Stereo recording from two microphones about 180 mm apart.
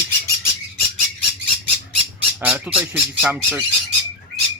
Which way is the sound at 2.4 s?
10° right (ahead or behind).